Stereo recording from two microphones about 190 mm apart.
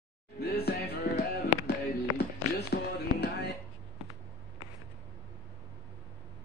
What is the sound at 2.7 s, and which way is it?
Music, 60° left (ahead or behind).